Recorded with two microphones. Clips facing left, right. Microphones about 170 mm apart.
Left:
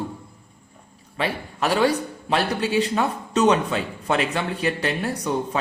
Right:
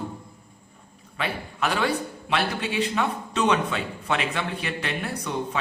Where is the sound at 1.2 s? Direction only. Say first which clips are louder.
Left 3 dB; 35° left (ahead or behind).